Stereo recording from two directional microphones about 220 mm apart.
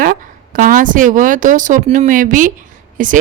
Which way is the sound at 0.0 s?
40° right (ahead or behind).